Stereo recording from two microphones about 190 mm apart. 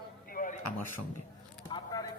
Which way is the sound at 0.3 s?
45° left (ahead or behind).